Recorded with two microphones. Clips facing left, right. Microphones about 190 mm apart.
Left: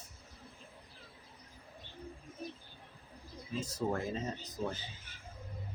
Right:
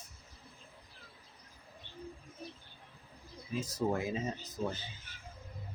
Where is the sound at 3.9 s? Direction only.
10° right (ahead or behind).